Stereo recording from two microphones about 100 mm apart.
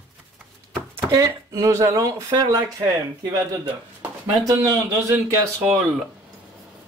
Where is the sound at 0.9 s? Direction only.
30° right (ahead or behind).